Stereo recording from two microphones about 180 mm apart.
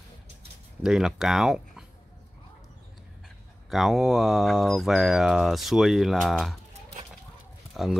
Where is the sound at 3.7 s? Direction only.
Centre (ahead or behind).